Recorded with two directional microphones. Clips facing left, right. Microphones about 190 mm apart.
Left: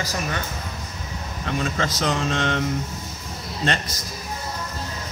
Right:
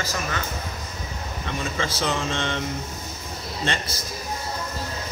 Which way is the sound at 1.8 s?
45° left (ahead or behind).